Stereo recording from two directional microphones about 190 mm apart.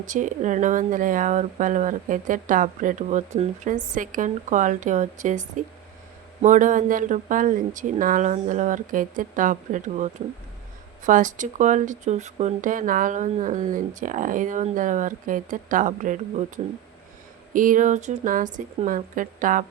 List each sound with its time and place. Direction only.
0.1 s speech: 40° right (ahead or behind)
17.5 s speech: 45° right (ahead or behind)